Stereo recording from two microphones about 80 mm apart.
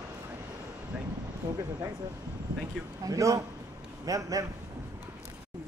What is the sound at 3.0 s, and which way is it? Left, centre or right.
A man's voice, right.